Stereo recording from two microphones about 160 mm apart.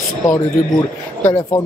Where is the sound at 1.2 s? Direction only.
15° left (ahead or behind).